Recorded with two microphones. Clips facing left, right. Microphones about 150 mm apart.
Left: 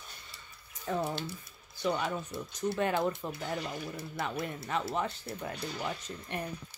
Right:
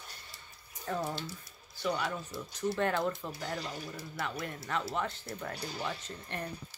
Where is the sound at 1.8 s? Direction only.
20° left (ahead or behind).